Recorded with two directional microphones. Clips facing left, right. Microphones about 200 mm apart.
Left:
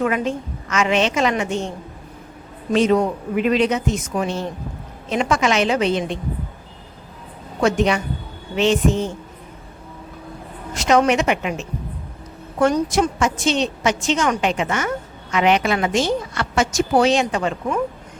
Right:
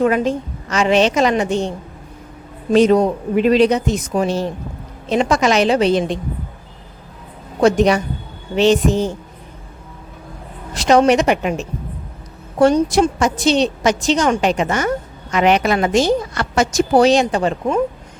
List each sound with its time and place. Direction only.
0.0 s a woman's voice: 35° right (ahead or behind)
2.7 s a woman's voice: 40° right (ahead or behind)
7.6 s a woman's voice: 40° right (ahead or behind)
10.8 s a woman's voice: 35° right (ahead or behind)